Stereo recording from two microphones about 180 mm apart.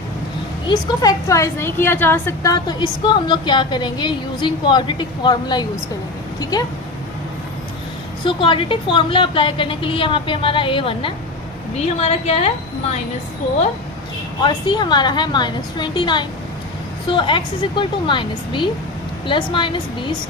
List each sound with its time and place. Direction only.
0.7 s a woman's voice: 20° left (ahead or behind)
8.2 s a woman's voice: 30° left (ahead or behind)
14.4 s a woman's voice: 25° left (ahead or behind)